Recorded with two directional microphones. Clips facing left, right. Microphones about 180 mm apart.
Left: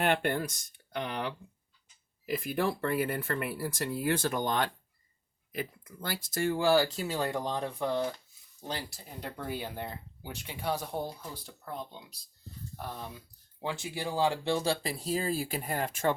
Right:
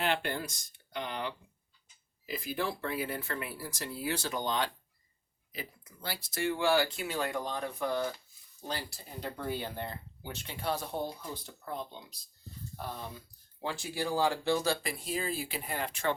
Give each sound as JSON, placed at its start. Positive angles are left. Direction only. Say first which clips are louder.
{"t": 0.0, "sound": "speech", "louder": "left 4 dB", "side_deg": 55}
{"t": 13.6, "sound": "speech", "louder": "even", "side_deg": 20}